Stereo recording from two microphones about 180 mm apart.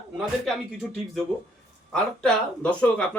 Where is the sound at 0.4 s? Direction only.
Centre (ahead or behind).